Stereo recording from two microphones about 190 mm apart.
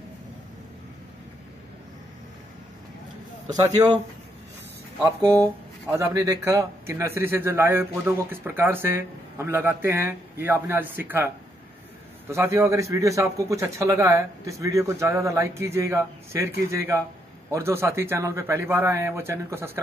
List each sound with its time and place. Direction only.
3.5 s speech: 20° right (ahead or behind)
5.9 s a man's voice: 15° right (ahead or behind)
12.3 s a man's voice: 15° right (ahead or behind)